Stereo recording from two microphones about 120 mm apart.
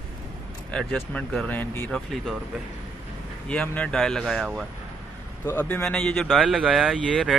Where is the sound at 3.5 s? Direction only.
10° left (ahead or behind).